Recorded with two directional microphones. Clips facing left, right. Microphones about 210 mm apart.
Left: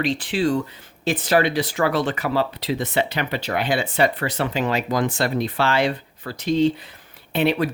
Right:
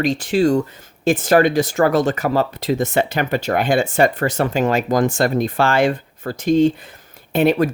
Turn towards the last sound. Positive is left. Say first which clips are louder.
# right 5 dB
turn(degrees=-45)  # may be behind; listen again after turning